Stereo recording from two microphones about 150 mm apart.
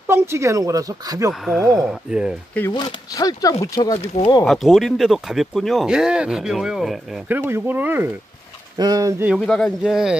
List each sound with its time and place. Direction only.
0.0 s speech: 15° right (ahead or behind)
1.4 s speech: centre (ahead or behind)
2.7 s speech: 25° left (ahead or behind)
4.5 s speech: centre (ahead or behind)
7.2 s speech: 15° right (ahead or behind)
8.7 s speech: 25° right (ahead or behind)
9.4 s speech: 5° left (ahead or behind)